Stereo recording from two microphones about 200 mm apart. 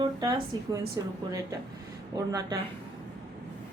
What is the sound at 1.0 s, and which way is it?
Speech, 15° right (ahead or behind).